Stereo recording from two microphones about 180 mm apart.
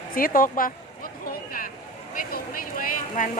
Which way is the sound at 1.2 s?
55° left (ahead or behind).